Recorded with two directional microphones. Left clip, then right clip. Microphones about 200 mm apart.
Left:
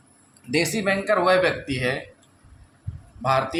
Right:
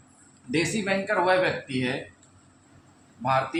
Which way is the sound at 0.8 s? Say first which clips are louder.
Left 4 dB; 55° left (ahead or behind).